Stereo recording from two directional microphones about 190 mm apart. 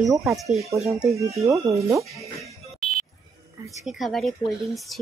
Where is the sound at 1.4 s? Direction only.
15° right (ahead or behind).